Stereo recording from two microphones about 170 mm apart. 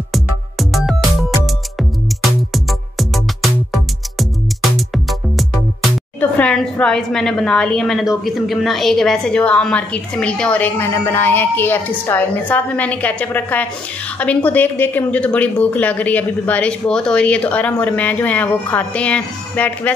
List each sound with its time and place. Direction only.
0.1 s music: centre (ahead or behind)
2.5 s music: centre (ahead or behind)
4.7 s music: centre (ahead or behind)
6.3 s a woman's voice: 5° left (ahead or behind)